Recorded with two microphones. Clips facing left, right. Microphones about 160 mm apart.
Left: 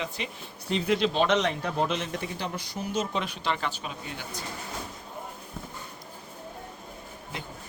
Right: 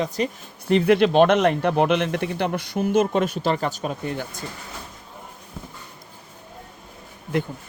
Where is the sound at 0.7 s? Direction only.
60° right (ahead or behind).